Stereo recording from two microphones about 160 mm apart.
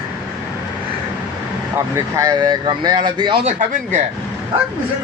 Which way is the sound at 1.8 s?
20° right (ahead or behind).